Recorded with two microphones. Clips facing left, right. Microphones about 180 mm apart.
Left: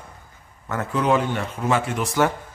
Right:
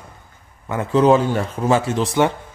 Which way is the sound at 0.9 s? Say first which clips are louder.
Right 7 dB; 30° right (ahead or behind).